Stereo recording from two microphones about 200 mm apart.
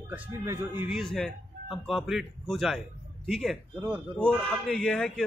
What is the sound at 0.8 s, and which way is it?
Speech, centre (ahead or behind).